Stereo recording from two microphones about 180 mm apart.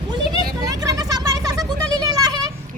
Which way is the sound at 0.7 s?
20° right (ahead or behind).